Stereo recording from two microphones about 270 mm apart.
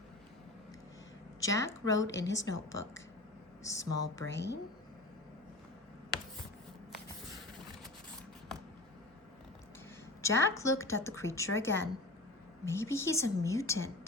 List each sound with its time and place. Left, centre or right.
1.4 s a woman's voice: centre
2.0 s speech: left
2.3 s a woman's voice: centre
4.3 s speech: left
10.2 s a woman's voice: centre